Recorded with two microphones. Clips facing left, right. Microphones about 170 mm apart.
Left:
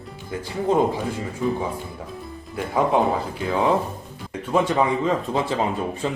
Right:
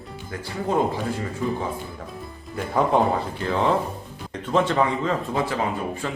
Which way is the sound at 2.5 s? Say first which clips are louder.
Even; 5° left (ahead or behind).